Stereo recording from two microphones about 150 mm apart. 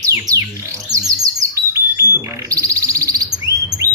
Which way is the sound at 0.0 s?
20° right (ahead or behind).